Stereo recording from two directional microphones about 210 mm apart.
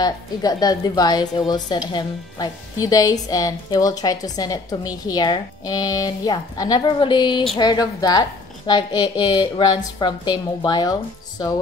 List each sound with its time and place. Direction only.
0.0 s a woman's voice: 20° left (ahead or behind)